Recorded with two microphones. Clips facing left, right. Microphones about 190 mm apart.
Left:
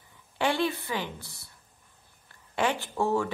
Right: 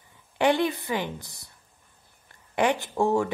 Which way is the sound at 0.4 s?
20° right (ahead or behind).